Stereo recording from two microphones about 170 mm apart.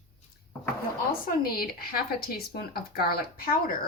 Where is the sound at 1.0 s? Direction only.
60° left (ahead or behind).